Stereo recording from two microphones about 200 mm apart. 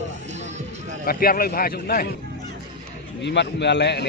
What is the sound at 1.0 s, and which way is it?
A man's voice, 45° left (ahead or behind).